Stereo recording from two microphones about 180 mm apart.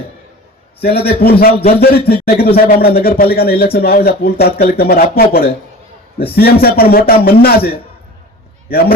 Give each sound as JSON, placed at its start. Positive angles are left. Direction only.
{"t": 0.8, "sound": "a man's voice", "side_deg": 60}